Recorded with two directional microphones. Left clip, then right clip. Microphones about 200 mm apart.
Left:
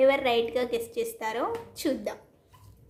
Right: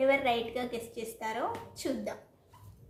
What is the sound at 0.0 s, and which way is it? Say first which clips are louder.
A woman's voice: left 5 dB; 40° left (ahead or behind).